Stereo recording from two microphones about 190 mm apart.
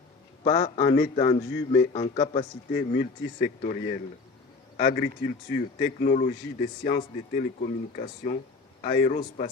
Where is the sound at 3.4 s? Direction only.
50° left (ahead or behind).